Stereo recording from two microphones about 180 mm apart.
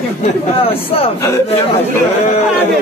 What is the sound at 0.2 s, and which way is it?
Speech, 30° left (ahead or behind).